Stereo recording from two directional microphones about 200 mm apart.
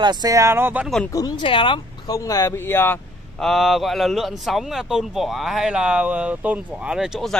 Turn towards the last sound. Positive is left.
turn(degrees=0)  # may be behind; listen again after turning